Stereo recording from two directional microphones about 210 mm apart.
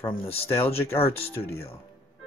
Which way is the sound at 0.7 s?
10° left (ahead or behind).